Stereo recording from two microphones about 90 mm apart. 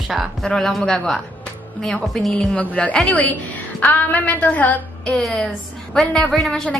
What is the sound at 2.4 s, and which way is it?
A woman's voice, 15° left (ahead or behind).